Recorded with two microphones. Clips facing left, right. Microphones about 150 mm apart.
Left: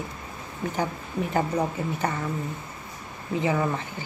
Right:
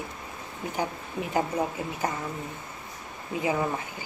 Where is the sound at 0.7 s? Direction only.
10° right (ahead or behind).